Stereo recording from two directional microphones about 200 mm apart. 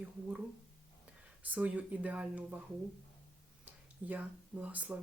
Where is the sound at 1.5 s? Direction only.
5° right (ahead or behind).